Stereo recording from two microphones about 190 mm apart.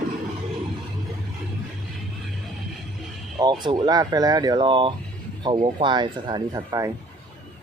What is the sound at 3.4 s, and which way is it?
Speech, 25° right (ahead or behind).